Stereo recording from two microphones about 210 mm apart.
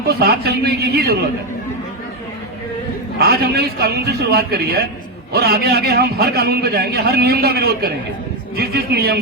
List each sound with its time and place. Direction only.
0.0 s a man's voice: 50° right (ahead or behind)
3.2 s a man's voice: 50° right (ahead or behind)